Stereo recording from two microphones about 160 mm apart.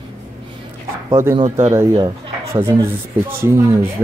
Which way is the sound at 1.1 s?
20° right (ahead or behind).